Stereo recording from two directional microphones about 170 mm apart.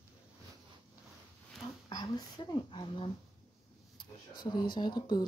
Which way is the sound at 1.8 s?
25° left (ahead or behind).